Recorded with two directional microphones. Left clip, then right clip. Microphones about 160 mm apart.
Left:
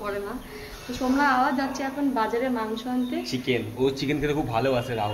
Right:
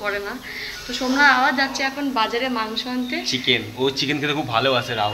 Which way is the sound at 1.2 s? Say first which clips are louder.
Right 7 dB; 15° left (ahead or behind).